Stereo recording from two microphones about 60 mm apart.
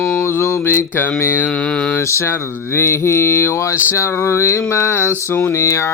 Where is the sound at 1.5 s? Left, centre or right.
Centre.